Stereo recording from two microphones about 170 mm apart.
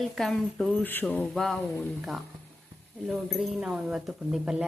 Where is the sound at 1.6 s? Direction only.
15° left (ahead or behind).